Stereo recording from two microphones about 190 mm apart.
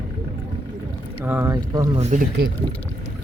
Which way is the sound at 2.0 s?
35° right (ahead or behind).